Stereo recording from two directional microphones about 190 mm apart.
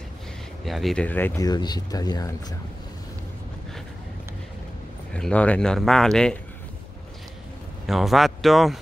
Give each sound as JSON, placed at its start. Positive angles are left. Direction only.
{"t": 0.7, "sound": "speech", "side_deg": 0}
{"t": 5.1, "sound": "speech", "side_deg": 5}
{"t": 7.8, "sound": "speech", "side_deg": 0}